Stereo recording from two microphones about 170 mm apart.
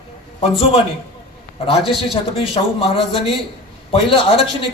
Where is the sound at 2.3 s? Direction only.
35° left (ahead or behind).